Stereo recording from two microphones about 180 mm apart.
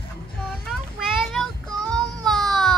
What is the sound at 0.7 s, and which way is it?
Child singing, 5° right (ahead or behind).